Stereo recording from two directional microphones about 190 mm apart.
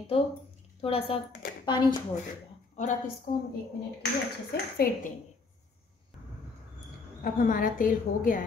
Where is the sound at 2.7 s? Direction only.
40° left (ahead or behind).